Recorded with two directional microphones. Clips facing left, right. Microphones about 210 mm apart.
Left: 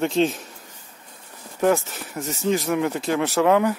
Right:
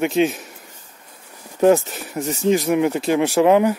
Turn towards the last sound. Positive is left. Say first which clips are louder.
# right 4 dB
turn(degrees=-20)  # may be behind; listen again after turning